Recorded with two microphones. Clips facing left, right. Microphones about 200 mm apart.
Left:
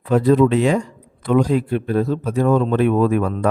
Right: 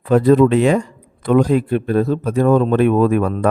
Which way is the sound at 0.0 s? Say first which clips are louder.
Right 3 dB; 55° right (ahead or behind).